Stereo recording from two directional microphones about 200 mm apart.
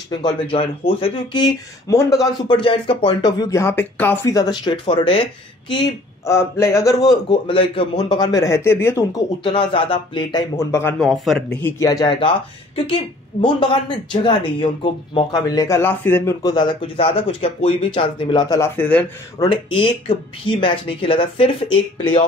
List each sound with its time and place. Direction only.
0.2 s a man's voice: 25° left (ahead or behind)
9.4 s a man's voice: 25° left (ahead or behind); by 11.7 s 5° left (ahead or behind)
11.8 s speech: 20° left (ahead or behind)
13.4 s speech: 25° left (ahead or behind)
18.8 s a man's voice: 10° left (ahead or behind)
19.5 s speech: 25° left (ahead or behind)